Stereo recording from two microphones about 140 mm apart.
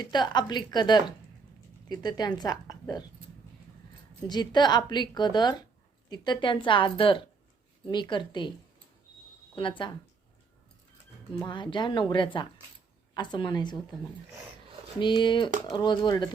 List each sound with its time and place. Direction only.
0.0 s a woman's voice: 30° left (ahead or behind)
4.3 s a woman's voice: 30° left (ahead or behind)
9.6 s a woman's voice: 35° left (ahead or behind)
11.3 s a woman's voice: 30° left (ahead or behind)
14.9 s a woman's voice: 35° left (ahead or behind)